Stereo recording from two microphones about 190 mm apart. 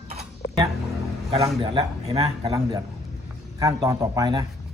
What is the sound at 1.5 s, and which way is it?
Speech, 25° right (ahead or behind).